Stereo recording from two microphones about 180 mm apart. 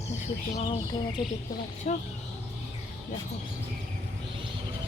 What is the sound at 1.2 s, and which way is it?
Speech, 25° left (ahead or behind).